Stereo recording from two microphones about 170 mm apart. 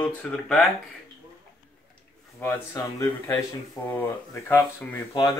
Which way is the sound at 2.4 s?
15° left (ahead or behind).